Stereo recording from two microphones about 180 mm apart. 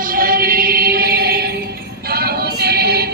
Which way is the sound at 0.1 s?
55° right (ahead or behind).